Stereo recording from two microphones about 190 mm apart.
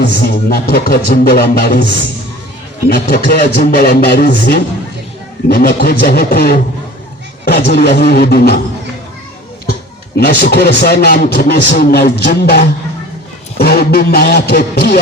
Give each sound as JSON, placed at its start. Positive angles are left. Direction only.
{"t": 0.0, "sound": "a man's voice", "side_deg": 55}
{"t": 2.9, "sound": "music", "side_deg": 55}
{"t": 7.4, "sound": "a man's voice", "side_deg": 55}
{"t": 10.2, "sound": "a man's voice", "side_deg": 55}